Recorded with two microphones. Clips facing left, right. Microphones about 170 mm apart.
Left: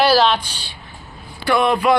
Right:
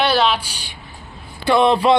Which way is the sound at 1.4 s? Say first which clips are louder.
Right 2 dB; 25° right (ahead or behind).